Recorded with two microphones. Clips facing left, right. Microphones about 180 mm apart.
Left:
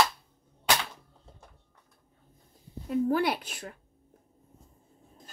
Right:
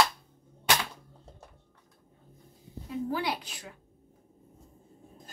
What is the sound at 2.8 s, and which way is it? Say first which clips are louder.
Speech: left 6 dB; 55° left (ahead or behind).